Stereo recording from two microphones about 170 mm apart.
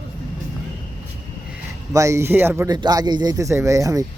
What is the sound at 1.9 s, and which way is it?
Speech, 15° right (ahead or behind).